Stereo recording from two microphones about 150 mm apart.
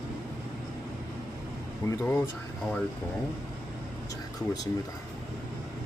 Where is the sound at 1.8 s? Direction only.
20° left (ahead or behind).